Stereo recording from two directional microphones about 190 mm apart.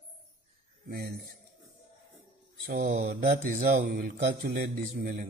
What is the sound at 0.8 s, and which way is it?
Speech, 55° right (ahead or behind).